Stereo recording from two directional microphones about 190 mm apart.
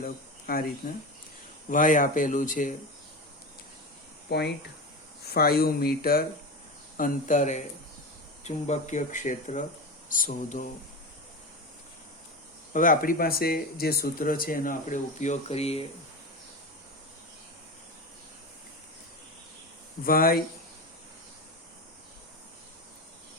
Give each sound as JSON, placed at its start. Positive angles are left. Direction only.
{"t": 0.0, "sound": "cricket", "side_deg": 50}
{"t": 0.8, "sound": "speech", "side_deg": 50}
{"t": 4.3, "sound": "speech", "side_deg": 60}
{"t": 12.7, "sound": "speech", "side_deg": 45}
{"t": 20.1, "sound": "speech", "side_deg": 50}